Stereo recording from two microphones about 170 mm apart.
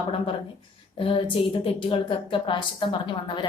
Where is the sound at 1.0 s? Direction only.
30° left (ahead or behind).